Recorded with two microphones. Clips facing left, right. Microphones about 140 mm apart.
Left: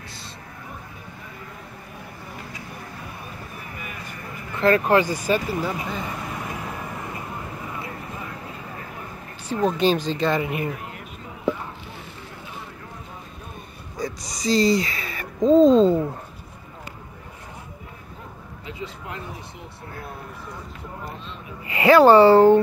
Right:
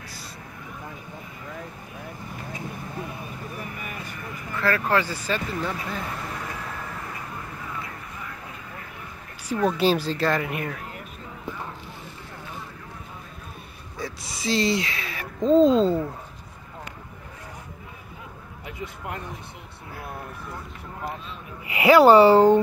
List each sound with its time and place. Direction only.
4.6 s speech: 20° left (ahead or behind)
6.4 s vehicle: 25° left (ahead or behind)
9.7 s speech: 5° right (ahead or behind)
13.9 s a sound: 5° right (ahead or behind)
15.7 s speech: centre (ahead or behind)
18.7 s a sound: 55° right (ahead or behind)
21.6 s speech: 10° right (ahead or behind)